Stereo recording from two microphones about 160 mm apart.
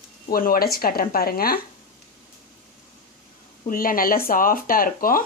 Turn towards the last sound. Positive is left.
turn(degrees=60)  # may be behind; listen again after turning